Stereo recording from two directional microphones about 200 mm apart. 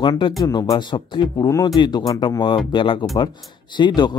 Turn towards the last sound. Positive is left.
turn(degrees=20)  # may be behind; listen again after turning